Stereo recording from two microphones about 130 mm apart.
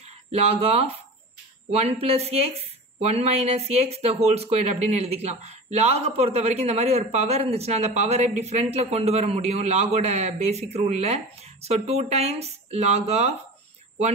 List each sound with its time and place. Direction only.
0.0 s a woman's voice: 55° right (ahead or behind)